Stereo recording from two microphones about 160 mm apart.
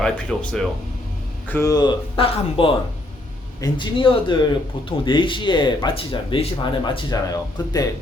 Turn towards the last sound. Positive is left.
turn(degrees=25)  # may be behind; listen again after turning